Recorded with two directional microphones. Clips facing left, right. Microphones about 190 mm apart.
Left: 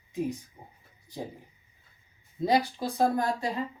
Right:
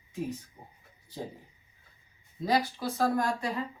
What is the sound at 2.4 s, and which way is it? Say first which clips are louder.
Speech: left 2 dB; 20° left (ahead or behind).